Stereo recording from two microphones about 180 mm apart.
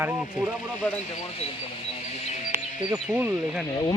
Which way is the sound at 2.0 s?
40° left (ahead or behind).